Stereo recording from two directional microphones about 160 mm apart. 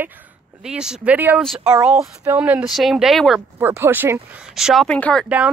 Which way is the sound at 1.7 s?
10° right (ahead or behind).